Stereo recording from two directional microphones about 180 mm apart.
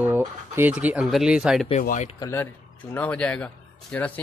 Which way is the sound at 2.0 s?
20° left (ahead or behind).